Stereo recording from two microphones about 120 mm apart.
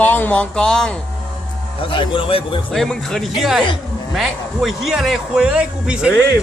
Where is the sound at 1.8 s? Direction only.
45° left (ahead or behind).